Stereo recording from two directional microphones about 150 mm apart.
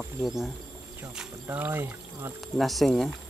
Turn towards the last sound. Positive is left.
turn(degrees=0)  # may be behind; listen again after turning